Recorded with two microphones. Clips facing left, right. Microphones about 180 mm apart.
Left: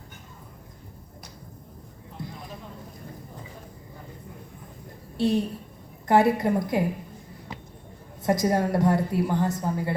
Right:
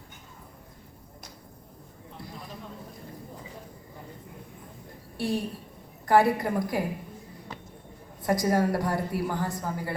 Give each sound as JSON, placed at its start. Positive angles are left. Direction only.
{"t": 5.1, "sound": "a woman's voice", "side_deg": 20}
{"t": 8.2, "sound": "a woman's voice", "side_deg": 20}